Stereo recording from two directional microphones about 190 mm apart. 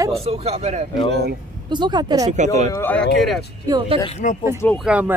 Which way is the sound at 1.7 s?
25° right (ahead or behind).